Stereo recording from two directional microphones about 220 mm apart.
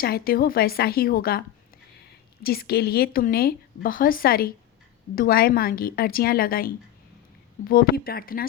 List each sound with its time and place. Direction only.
0.0 s a woman's voice: 45° left (ahead or behind)